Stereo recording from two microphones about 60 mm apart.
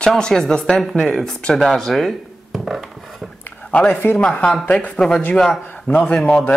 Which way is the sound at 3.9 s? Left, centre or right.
Left.